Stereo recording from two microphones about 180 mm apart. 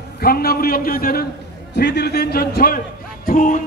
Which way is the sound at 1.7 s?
70° left (ahead or behind).